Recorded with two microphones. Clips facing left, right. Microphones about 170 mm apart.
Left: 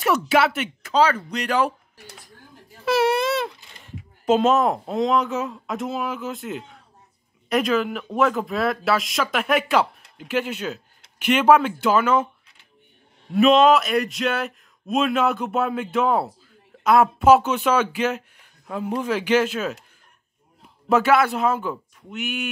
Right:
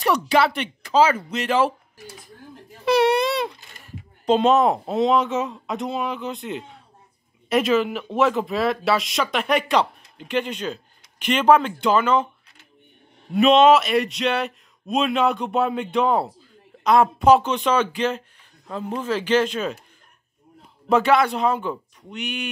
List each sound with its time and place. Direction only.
0.0 s speech: 5° left (ahead or behind)
2.8 s baby cry: 5° left (ahead or behind)
4.3 s speech: centre (ahead or behind)
13.3 s speech: centre (ahead or behind)
20.9 s speech: 5° left (ahead or behind)